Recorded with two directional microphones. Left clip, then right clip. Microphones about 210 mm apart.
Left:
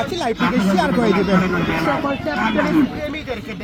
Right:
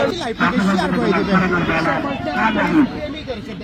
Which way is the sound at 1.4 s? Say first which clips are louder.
Right 2 dB; centre (ahead or behind).